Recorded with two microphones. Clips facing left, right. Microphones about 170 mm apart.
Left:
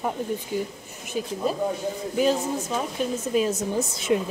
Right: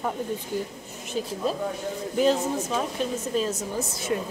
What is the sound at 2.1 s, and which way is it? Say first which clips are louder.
Speech: right 1 dB; 5° left (ahead or behind).